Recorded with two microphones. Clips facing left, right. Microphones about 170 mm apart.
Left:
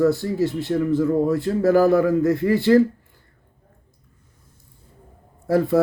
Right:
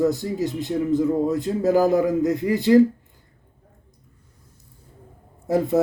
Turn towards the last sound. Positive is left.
turn(degrees=-20)  # may be behind; listen again after turning